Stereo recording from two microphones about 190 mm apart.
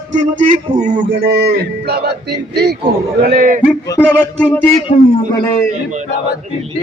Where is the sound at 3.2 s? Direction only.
50° right (ahead or behind).